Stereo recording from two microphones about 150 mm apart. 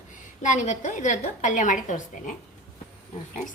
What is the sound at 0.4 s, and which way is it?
A woman's voice, 55° left (ahead or behind).